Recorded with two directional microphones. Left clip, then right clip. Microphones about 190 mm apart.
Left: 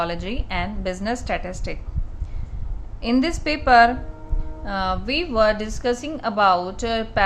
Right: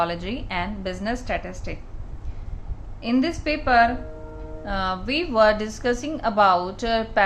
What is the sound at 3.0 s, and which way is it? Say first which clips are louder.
A woman's voice: left 2 dB; 25° left (ahead or behind).